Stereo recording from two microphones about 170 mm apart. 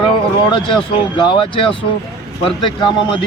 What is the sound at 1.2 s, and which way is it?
Speech, 30° left (ahead or behind).